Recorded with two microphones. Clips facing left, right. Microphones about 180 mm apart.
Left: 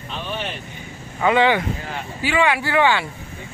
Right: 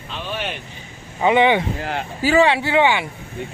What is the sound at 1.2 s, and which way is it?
Speech, 20° right (ahead or behind).